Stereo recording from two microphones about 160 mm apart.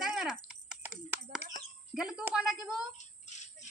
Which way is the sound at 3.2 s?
50° left (ahead or behind).